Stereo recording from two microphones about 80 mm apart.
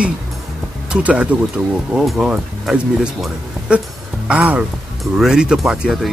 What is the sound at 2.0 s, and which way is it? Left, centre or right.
Speech, centre.